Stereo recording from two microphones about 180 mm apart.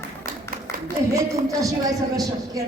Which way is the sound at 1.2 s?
20° right (ahead or behind).